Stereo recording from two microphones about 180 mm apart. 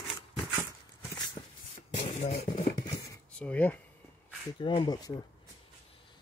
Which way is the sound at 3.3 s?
5° left (ahead or behind).